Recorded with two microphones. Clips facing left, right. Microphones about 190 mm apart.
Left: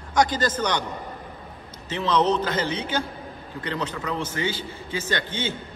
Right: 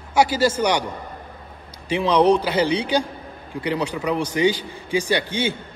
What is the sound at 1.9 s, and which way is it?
A man's voice, 10° right (ahead or behind).